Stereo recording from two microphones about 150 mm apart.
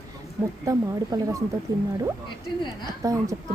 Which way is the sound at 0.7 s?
25° right (ahead or behind).